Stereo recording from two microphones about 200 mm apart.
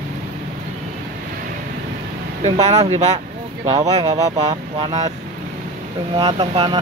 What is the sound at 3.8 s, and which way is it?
Speech, 20° right (ahead or behind).